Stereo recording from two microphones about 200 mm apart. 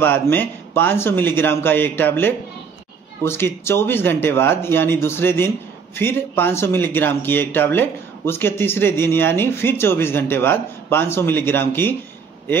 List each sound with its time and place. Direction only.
0.0 s speech: 10° left (ahead or behind)